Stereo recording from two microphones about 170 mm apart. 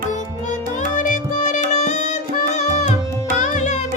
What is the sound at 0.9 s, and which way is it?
Music, 45° left (ahead or behind).